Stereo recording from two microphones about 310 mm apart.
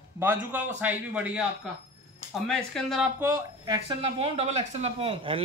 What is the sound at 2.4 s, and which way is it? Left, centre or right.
Speech, centre.